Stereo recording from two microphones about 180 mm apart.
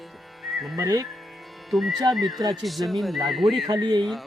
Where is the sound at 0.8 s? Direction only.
20° right (ahead or behind).